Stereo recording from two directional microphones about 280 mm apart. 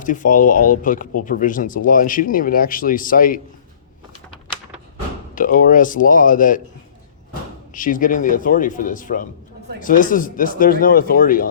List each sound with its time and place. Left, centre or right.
0.0 s speech: left
5.3 s speech: left
7.7 s speech: left